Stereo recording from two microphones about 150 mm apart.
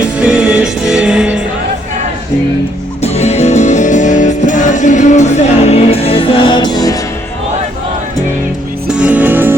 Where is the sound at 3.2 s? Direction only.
45° left (ahead or behind); by 6.9 s 30° left (ahead or behind).